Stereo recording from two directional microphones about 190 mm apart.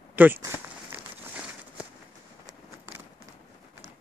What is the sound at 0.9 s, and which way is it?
Crumpling, 10° right (ahead or behind).